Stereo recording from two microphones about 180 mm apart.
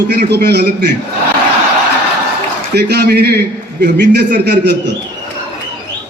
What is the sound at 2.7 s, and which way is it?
A man's voice, 65° right (ahead or behind).